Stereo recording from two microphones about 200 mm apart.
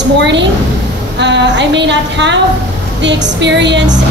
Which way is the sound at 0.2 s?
60° right (ahead or behind).